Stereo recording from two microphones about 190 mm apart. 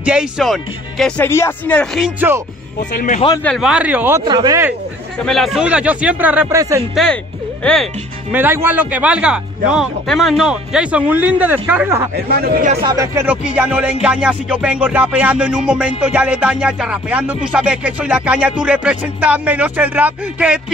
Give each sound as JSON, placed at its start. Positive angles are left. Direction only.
{"t": 0.0, "sound": "speech", "side_deg": -5}
{"t": 3.4, "sound": "speech", "side_deg": 0}
{"t": 4.2, "sound": "speech", "side_deg": -25}
{"t": 5.2, "sound": "speech", "side_deg": 0}
{"t": 7.6, "sound": "speech", "side_deg": 5}
{"t": 8.3, "sound": "speech", "side_deg": -10}